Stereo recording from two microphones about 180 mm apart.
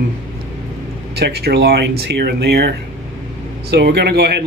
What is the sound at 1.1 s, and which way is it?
Speech, 65° right (ahead or behind).